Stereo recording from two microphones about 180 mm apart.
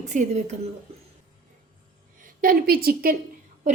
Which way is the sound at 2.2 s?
50° right (ahead or behind).